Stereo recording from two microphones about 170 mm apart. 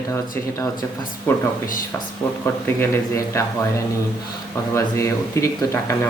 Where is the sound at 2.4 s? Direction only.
15° left (ahead or behind).